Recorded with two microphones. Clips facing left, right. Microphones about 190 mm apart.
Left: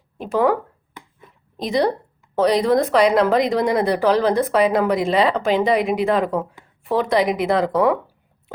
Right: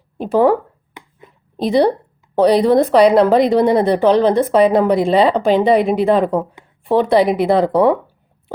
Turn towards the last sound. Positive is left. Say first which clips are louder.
# right 5 dB
turn(degrees=-30)  # may be behind; listen again after turning